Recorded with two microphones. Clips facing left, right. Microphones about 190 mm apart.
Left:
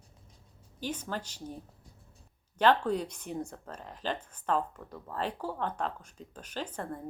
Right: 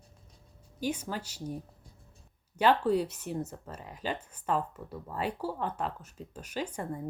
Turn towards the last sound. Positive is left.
turn(degrees=-10)  # may be behind; listen again after turning